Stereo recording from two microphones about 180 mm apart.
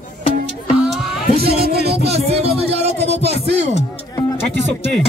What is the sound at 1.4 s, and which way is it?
Music, 65° right (ahead or behind).